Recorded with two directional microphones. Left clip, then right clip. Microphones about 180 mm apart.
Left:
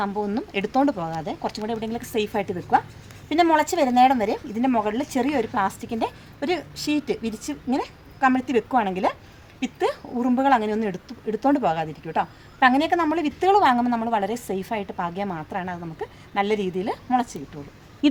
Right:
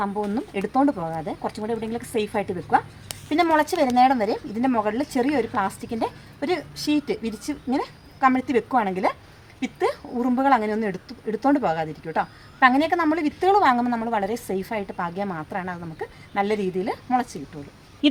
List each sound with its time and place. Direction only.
0.0 s speech: 15° left (ahead or behind)